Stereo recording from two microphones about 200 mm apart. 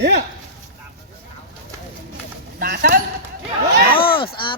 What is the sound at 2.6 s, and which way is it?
Speech, 50° right (ahead or behind).